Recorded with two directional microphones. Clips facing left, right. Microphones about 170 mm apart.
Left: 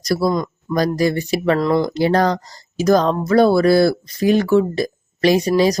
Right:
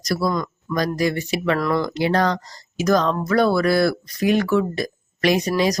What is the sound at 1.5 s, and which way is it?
Speech, 25° left (ahead or behind).